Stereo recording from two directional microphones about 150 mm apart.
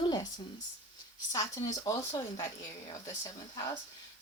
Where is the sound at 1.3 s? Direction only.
20° left (ahead or behind).